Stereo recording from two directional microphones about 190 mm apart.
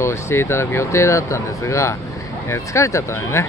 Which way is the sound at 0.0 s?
15° left (ahead or behind).